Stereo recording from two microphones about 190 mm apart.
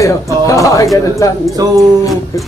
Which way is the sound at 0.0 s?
15° left (ahead or behind).